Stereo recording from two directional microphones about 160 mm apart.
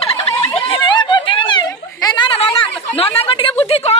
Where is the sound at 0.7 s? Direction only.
30° left (ahead or behind).